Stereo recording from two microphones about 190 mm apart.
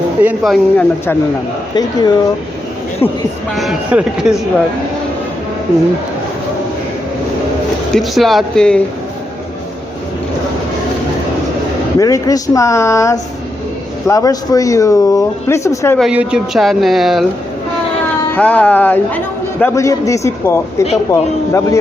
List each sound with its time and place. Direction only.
0.2 s speech: 5° right (ahead or behind)
1.7 s a man's voice: 20° left (ahead or behind)
3.5 s speech: centre (ahead or behind)
7.9 s speech: centre (ahead or behind)
11.9 s a man's voice: 20° left (ahead or behind)
16.0 s speech: 5° right (ahead or behind)
18.3 s a man's voice: 5° left (ahead or behind)